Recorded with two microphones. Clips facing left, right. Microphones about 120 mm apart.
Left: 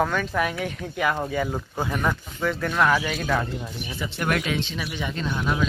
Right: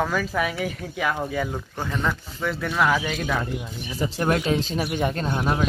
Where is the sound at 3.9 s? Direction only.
35° right (ahead or behind).